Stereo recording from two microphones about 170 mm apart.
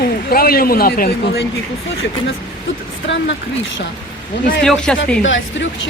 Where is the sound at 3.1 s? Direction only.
90° left.